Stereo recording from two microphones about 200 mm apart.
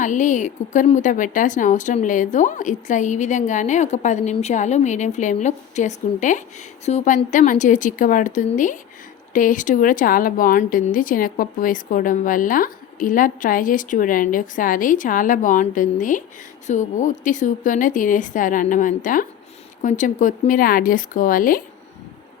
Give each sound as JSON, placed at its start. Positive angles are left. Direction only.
{"t": 0.0, "sound": "a woman's voice", "side_deg": 40}